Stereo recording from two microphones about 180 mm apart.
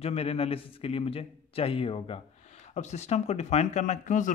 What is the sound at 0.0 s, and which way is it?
Speech, 35° left (ahead or behind).